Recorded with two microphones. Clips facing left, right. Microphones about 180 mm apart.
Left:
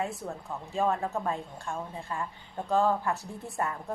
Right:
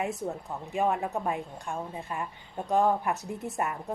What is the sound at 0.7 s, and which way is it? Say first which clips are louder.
A woman's voice: right 1 dB; 15° right (ahead or behind).